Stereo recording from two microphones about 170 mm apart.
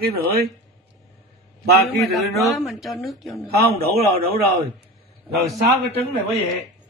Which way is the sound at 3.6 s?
60° right (ahead or behind).